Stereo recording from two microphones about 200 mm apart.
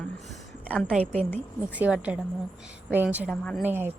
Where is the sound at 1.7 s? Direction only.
5° right (ahead or behind).